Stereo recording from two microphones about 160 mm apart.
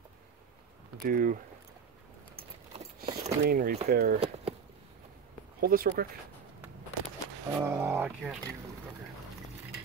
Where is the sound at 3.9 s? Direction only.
80° right.